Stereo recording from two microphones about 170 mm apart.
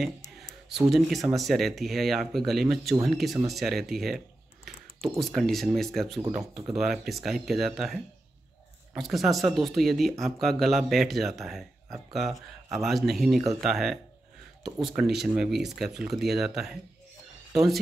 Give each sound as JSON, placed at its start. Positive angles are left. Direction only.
{"t": 0.7, "sound": "speech", "side_deg": 0}
{"t": 4.7, "sound": "a sound", "side_deg": 0}
{"t": 5.2, "sound": "speech", "side_deg": 0}